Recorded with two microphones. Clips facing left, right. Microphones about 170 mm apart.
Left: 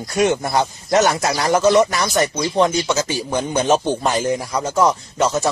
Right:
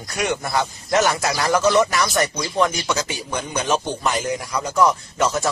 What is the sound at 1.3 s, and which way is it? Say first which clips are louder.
Speech: left 2 dB; 35° left (ahead or behind).